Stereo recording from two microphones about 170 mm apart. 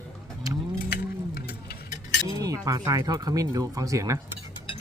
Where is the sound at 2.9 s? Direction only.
20° right (ahead or behind).